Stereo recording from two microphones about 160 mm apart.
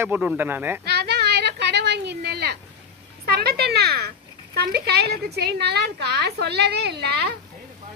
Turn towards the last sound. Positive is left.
turn(degrees=-90)